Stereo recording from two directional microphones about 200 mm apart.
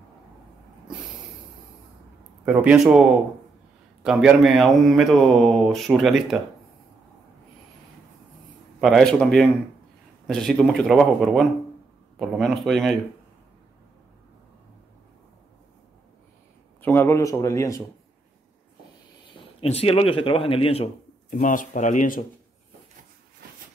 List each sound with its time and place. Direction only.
2.4 s speech: 5° right (ahead or behind)
8.8 s speech: 5° left (ahead or behind)
16.8 s speech: 10° left (ahead or behind)
19.3 s speech: 30° left (ahead or behind)
21.3 s speech: 40° left (ahead or behind)